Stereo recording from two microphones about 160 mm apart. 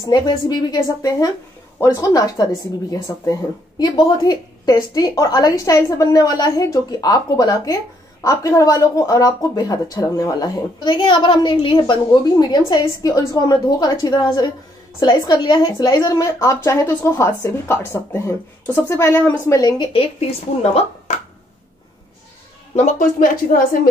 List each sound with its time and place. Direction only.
0.0 s a woman's voice: 25° left (ahead or behind)
19.9 s speech: 35° left (ahead or behind)
22.8 s speech: 55° left (ahead or behind)